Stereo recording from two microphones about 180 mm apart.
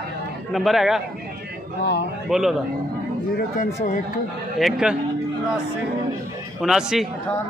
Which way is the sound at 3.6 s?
50° left (ahead or behind).